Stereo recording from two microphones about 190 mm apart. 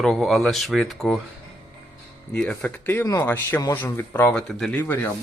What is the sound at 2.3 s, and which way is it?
Speech, 5° left (ahead or behind).